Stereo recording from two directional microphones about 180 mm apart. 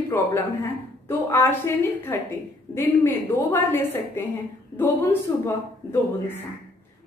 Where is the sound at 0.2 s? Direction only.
15° left (ahead or behind).